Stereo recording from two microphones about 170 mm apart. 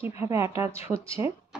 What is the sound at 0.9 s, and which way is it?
Speech, centre (ahead or behind).